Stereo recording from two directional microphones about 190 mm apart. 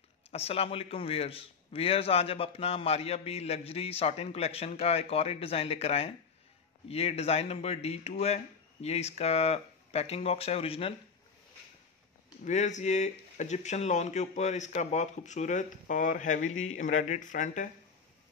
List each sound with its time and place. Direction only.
0.3 s a man's voice: 30° left (ahead or behind)
12.4 s a man's voice: 40° left (ahead or behind)